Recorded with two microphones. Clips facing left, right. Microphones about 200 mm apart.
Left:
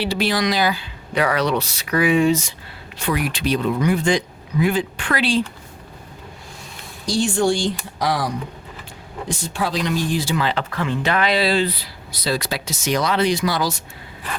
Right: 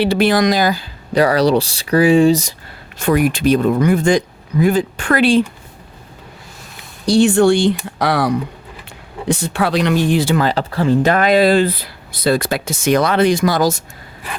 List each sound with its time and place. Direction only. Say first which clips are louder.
0.0 s speech: right 7 dB; 55° right (ahead or behind); by 2.5 s 35° right (ahead or behind)
3.0 s speech: right 8 dB; 45° right (ahead or behind)
7.0 s speech: right 8 dB; 65° right (ahead or behind); by 13.8 s 45° right (ahead or behind)